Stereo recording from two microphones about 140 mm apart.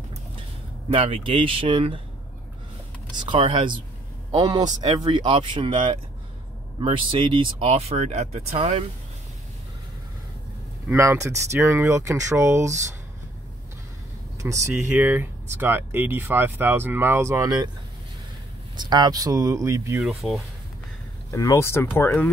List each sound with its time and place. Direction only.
0.8 s speech: 45° right (ahead or behind)
3.2 s speech: 40° right (ahead or behind)
10.9 s speech: 20° right (ahead or behind)
14.7 s speech: 15° right (ahead or behind)
18.8 s speech: 30° right (ahead or behind)
20.0 s speech: 5° right (ahead or behind)
21.3 s speech: 25° left (ahead or behind)